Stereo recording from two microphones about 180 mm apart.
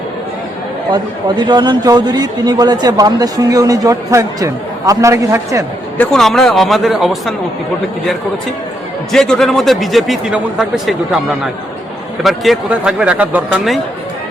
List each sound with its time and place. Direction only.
0.9 s a man's voice: 25° right (ahead or behind)
6.0 s speech: centre (ahead or behind)
9.1 s speech: 5° left (ahead or behind)
12.2 s speech: centre (ahead or behind)